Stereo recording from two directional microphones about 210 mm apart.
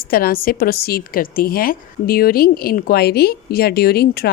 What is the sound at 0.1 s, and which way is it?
A woman's voice, 45° left (ahead or behind).